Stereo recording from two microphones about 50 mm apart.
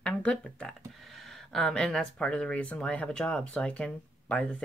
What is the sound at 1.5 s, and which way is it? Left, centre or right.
Speech, centre.